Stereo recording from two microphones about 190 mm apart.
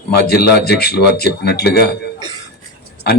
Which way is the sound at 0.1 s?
55° left (ahead or behind).